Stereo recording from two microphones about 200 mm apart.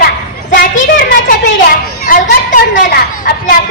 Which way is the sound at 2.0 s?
40° left (ahead or behind).